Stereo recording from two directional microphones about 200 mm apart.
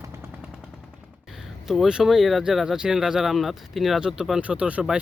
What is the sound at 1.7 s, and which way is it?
Speech, 5° right (ahead or behind).